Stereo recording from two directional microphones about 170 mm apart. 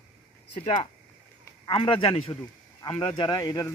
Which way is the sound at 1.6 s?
30° left (ahead or behind).